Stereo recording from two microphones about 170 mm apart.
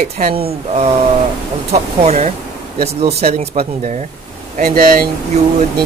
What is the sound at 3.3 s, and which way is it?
Speech, 40° right (ahead or behind).